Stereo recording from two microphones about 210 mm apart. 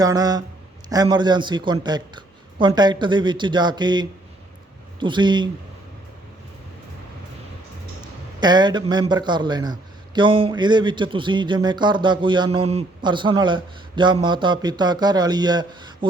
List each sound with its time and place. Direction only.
0.0 s speech: 20° right (ahead or behind)
8.4 s speech: 20° right (ahead or behind)